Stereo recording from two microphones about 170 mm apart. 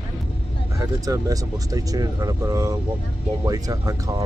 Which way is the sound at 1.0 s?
20° right (ahead or behind).